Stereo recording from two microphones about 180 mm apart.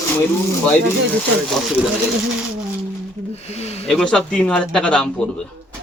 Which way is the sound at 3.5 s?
35° left (ahead or behind).